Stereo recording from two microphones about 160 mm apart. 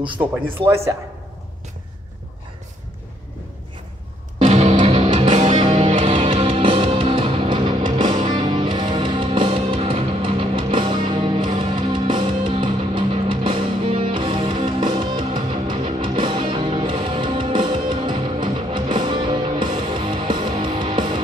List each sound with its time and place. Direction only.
0.2 s speech: 10° right (ahead or behind)
4.4 s music: 40° right (ahead or behind)